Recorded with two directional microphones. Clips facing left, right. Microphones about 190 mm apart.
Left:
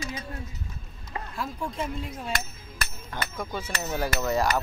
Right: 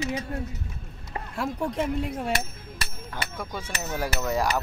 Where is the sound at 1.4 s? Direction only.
70° right (ahead or behind).